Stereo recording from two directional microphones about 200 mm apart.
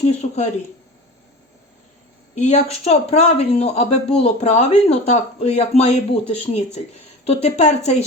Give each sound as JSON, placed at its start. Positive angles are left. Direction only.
{"t": 0.0, "sound": "speech", "side_deg": 35}
{"t": 2.3, "sound": "speech", "side_deg": 35}